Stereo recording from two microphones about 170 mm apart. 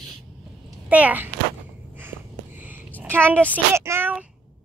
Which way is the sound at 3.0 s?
10° right (ahead or behind).